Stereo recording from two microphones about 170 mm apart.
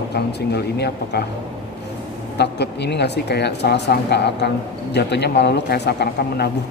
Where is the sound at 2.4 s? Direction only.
80° left.